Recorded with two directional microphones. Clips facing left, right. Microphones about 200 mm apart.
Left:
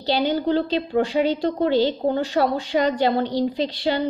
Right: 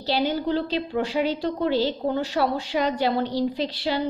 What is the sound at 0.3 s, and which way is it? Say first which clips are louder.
A woman's voice: left 4 dB; 5° right (ahead or behind).